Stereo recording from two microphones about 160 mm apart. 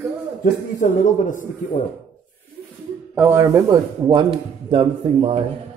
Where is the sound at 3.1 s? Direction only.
15° right (ahead or behind); by 5.4 s 40° right (ahead or behind).